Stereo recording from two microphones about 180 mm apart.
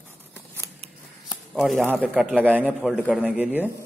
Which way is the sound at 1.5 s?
Centre (ahead or behind).